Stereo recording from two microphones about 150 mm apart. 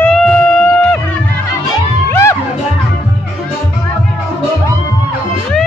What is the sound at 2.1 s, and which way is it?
Music, 20° left (ahead or behind).